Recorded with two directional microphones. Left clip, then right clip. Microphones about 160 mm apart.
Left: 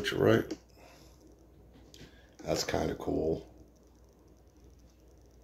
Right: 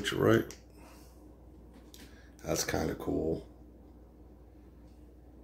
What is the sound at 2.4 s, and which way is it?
Speech, 10° left (ahead or behind).